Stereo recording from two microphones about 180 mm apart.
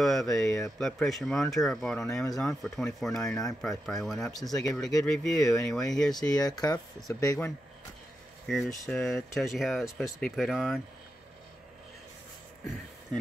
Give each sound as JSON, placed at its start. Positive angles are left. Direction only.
{"t": 0.0, "sound": "speech", "side_deg": 0}
{"t": 4.5, "sound": "speech", "side_deg": 20}
{"t": 4.7, "sound": "speech", "side_deg": 0}
{"t": 6.1, "sound": "speech", "side_deg": 20}
{"t": 8.5, "sound": "speech", "side_deg": 0}